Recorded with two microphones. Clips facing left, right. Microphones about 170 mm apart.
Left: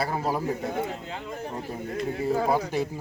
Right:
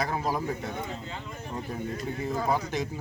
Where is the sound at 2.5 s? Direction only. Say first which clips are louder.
Left 3 dB; 10° left (ahead or behind).